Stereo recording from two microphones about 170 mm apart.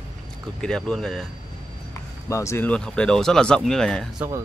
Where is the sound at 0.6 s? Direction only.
5° left (ahead or behind).